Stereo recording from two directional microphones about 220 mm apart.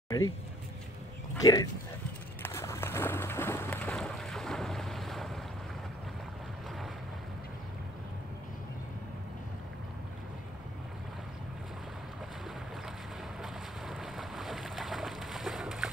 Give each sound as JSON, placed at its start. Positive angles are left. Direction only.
{"t": 1.4, "sound": "speech", "side_deg": 15}
{"t": 2.4, "sound": "a sound", "side_deg": 10}
{"t": 13.4, "sound": "boat", "side_deg": 0}